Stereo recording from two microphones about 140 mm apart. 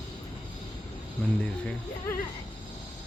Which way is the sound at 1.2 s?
10° left (ahead or behind).